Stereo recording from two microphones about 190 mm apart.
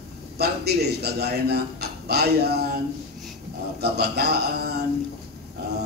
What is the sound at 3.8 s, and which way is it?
A man's voice, 60° right (ahead or behind).